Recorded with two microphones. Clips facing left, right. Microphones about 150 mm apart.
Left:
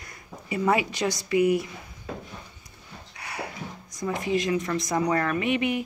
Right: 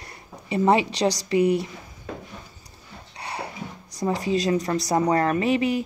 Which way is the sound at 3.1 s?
30° right (ahead or behind).